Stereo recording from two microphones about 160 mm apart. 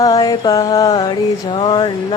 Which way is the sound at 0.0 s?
20° left (ahead or behind).